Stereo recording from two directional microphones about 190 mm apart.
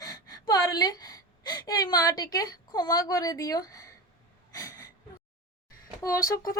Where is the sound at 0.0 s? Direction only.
20° left (ahead or behind).